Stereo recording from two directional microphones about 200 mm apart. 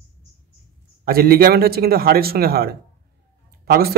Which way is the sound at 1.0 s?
50° right (ahead or behind).